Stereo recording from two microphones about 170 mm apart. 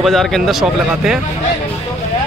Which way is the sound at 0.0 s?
Centre (ahead or behind).